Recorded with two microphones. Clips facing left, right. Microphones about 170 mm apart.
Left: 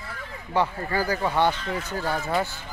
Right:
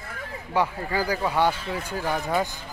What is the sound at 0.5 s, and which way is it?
Speech, 10° right (ahead or behind).